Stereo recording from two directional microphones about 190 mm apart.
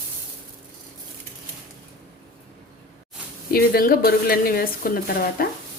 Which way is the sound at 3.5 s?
50° left (ahead or behind).